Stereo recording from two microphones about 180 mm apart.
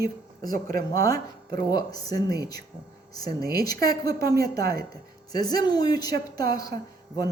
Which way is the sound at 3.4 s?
55° right (ahead or behind).